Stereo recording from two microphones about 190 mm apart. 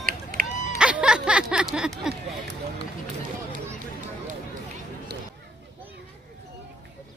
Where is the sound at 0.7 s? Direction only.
5° right (ahead or behind).